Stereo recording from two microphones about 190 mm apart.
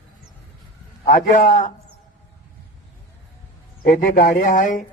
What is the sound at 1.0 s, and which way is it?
Speech, 40° left (ahead or behind).